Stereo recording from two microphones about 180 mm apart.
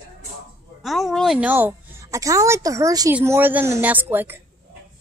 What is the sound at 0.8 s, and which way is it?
A woman's voice, centre (ahead or behind).